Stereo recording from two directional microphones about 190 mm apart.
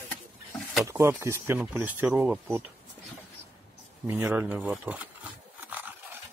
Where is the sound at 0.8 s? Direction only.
15° right (ahead or behind).